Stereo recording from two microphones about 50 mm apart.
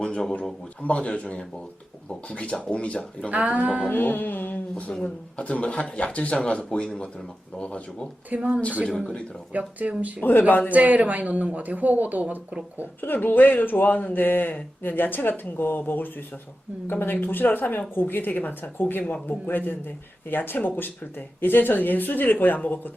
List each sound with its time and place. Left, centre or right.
0.0 s a sound: centre
0.8 s speech: left
3.2 s speech: right
3.8 s speech: left
4.7 s speech: centre
5.0 s speech: left
8.3 s speech: right
9.5 s speech: right
10.2 s speech: left
10.7 s speech: right
13.0 s speech: left